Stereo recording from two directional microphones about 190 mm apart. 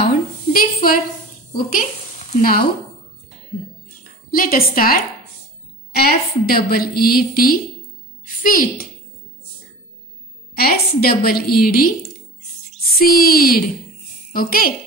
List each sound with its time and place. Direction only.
0.0 s a sound: 50° left (ahead or behind)
1.5 s a woman's voice: 45° left (ahead or behind)
4.3 s a woman's voice: 50° left (ahead or behind)
10.5 s a woman's voice: 55° left (ahead or behind)
13.0 s a woman's voice: 55° left (ahead or behind)